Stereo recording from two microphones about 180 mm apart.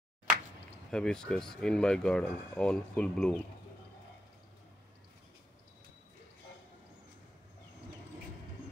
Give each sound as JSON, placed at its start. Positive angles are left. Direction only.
{"t": 0.8, "sound": "speech", "side_deg": 5}